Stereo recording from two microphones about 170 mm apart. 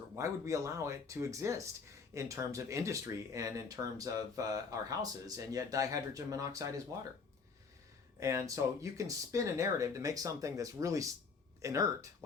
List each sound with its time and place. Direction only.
0.2 s speech: 20° right (ahead or behind)
8.2 s speech: 20° right (ahead or behind)